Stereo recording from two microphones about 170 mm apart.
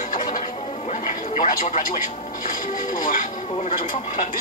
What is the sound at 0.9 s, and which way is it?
Television, 50° left (ahead or behind).